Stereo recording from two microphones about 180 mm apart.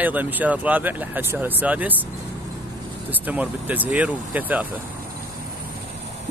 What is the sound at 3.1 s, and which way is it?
Speech, 10° right (ahead or behind).